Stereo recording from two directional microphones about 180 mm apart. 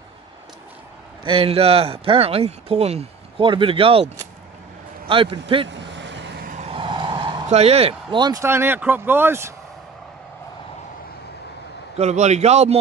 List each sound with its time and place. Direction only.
1.2 s a man's voice: 30° right (ahead or behind)
5.7 s vehicle: 90° right; by 6.5 s 70° right (ahead or behind)
6.5 s vehicle: 35° right (ahead or behind)
7.4 s speech: 35° right (ahead or behind); by 9.5 s 15° right (ahead or behind)
12.0 s speech: 40° right (ahead or behind)